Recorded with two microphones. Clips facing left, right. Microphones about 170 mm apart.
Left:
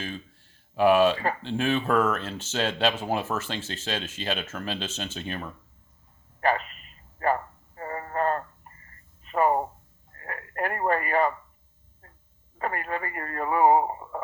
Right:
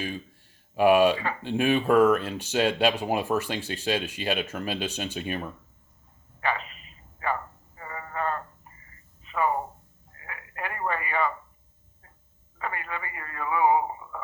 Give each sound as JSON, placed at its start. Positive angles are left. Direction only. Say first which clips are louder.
{"t": 0.8, "sound": "speech", "louder": "even", "side_deg": -15}
{"t": 6.4, "sound": "speech", "louder": "left 5 dB", "side_deg": 40}
{"t": 7.2, "sound": "a sound", "louder": "left 5 dB", "side_deg": 45}
{"t": 10.2, "sound": "telephone", "louder": "left 6 dB", "side_deg": 45}
{"t": 12.5, "sound": "radio", "louder": "left 4 dB", "side_deg": 45}